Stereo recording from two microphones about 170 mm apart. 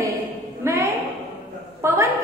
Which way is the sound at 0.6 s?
15° right (ahead or behind).